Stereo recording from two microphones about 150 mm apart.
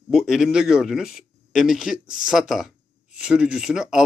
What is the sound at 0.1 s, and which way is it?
Speech, 5° right (ahead or behind).